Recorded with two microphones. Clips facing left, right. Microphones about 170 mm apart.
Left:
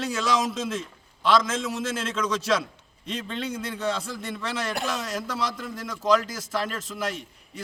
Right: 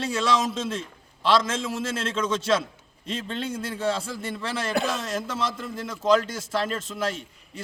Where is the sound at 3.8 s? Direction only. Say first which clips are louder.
Right 2 dB; 30° right (ahead or behind).